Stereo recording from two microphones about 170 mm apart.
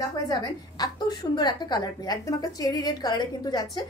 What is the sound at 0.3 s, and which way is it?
A woman's voice, 25° left (ahead or behind).